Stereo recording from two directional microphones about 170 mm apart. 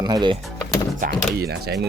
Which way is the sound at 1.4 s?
70° right (ahead or behind).